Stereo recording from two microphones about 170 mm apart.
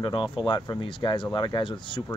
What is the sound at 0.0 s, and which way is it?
Speech, 30° left (ahead or behind).